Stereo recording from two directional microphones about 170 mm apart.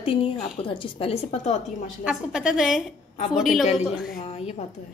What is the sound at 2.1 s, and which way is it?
A woman's voice, 5° right (ahead or behind).